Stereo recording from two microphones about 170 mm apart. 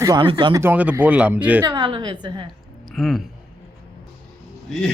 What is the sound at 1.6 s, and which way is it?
Speech, 25° right (ahead or behind).